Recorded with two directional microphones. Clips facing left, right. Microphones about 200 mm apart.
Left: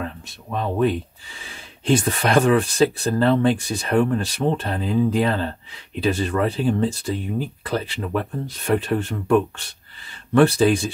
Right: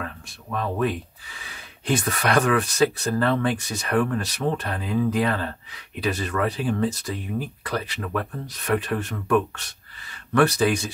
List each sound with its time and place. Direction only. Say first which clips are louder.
0.0 s speech: left 4 dB; 25° left (ahead or behind)
10.3 s speech: left 4 dB; 30° left (ahead or behind)